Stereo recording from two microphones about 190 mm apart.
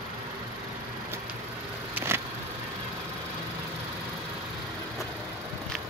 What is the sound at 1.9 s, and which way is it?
Vehicle, 15° right (ahead or behind).